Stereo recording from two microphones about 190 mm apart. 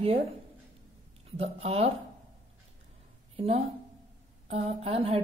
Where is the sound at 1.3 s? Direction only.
30° right (ahead or behind).